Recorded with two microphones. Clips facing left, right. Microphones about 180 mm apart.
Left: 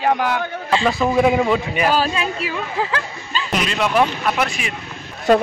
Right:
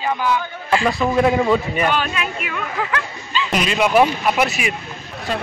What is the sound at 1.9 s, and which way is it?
Speech, 30° left (ahead or behind).